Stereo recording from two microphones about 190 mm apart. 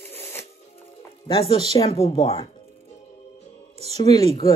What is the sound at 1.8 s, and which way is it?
Speech, 30° left (ahead or behind).